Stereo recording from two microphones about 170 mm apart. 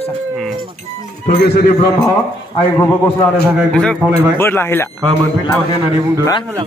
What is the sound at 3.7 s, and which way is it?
A man's voice, 5° left (ahead or behind).